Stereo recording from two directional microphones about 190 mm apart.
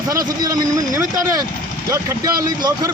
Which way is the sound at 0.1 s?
20° right (ahead or behind).